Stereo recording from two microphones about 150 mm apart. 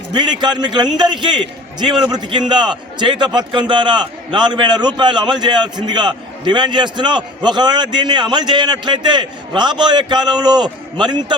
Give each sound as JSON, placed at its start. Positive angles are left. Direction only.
{"t": 0.1, "sound": "a man's voice", "side_deg": -30}